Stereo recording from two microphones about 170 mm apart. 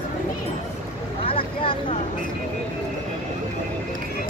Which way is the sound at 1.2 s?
30° left (ahead or behind).